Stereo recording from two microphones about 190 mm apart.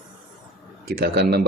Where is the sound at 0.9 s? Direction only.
55° right (ahead or behind).